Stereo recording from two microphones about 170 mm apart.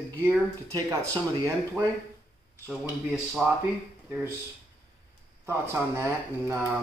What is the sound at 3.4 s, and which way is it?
Speech, 5° right (ahead or behind).